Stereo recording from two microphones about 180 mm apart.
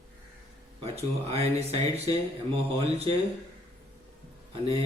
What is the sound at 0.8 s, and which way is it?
Speech, 35° right (ahead or behind).